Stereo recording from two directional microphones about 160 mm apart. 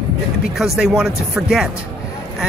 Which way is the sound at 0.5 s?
5° right (ahead or behind).